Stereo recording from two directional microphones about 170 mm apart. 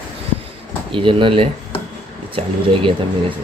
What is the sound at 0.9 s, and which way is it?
Speech, 30° right (ahead or behind).